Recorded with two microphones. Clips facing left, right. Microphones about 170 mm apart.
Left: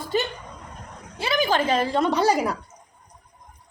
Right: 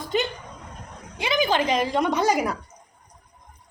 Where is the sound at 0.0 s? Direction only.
20° right (ahead or behind).